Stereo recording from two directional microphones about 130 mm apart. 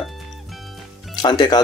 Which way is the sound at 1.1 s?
35° left (ahead or behind).